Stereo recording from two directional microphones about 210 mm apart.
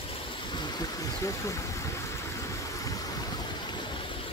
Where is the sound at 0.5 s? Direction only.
15° left (ahead or behind).